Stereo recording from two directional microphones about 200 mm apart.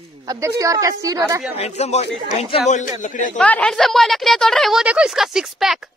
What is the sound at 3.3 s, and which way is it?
A woman's voice, 5° left (ahead or behind).